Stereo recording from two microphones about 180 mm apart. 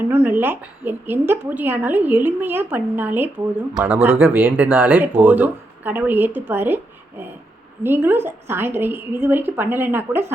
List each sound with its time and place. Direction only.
0.1 s a woman's voice: 10° right (ahead or behind)
7.9 s a woman's voice: 10° right (ahead or behind)